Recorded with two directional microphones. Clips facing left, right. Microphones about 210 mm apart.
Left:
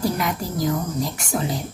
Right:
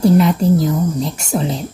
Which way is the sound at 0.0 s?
25° right (ahead or behind).